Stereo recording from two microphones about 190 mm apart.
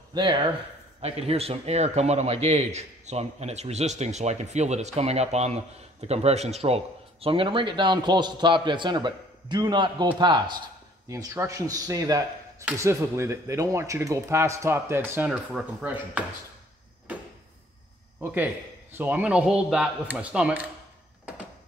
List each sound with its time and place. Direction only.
0.1 s a man's voice: 25° right (ahead or behind); by 16.3 s 10° right (ahead or behind)
18.2 s speech: 10° right (ahead or behind)